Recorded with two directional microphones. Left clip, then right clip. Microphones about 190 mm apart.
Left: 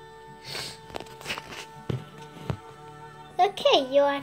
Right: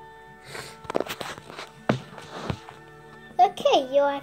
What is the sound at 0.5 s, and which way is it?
Music, 5° right (ahead or behind).